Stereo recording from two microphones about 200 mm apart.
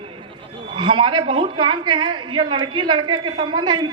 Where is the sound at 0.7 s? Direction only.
25° right (ahead or behind).